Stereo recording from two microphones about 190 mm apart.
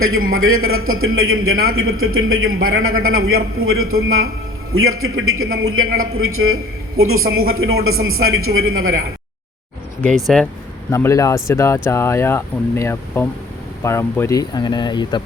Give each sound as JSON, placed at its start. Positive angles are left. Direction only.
{"t": 0.0, "sound": "a man's voice", "side_deg": -90}
{"t": 10.0, "sound": "speech", "side_deg": 5}
{"t": 10.9, "sound": "speech", "side_deg": 15}